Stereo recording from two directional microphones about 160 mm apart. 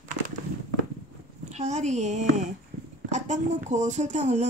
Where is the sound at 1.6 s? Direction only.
45° right (ahead or behind).